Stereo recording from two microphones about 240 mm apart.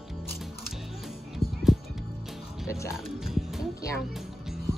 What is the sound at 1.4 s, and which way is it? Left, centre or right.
Music, left.